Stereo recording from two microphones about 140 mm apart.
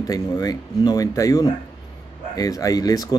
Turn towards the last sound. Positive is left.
turn(degrees=25)  # may be behind; listen again after turning